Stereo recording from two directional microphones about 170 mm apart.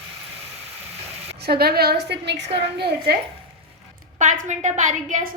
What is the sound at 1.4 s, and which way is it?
A woman's voice, 65° right (ahead or behind).